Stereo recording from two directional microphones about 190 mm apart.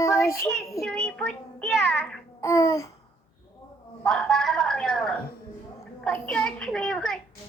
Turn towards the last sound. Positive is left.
turn(degrees=5)  # may be behind; listen again after turning